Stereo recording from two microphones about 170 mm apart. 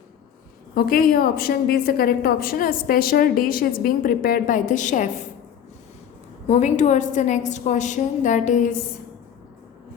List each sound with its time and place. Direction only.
0.8 s a woman's voice: 60° left (ahead or behind)
6.5 s a woman's voice: 45° left (ahead or behind)